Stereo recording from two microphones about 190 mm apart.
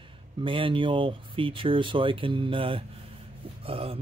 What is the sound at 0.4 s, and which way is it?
Speech, 25° right (ahead or behind).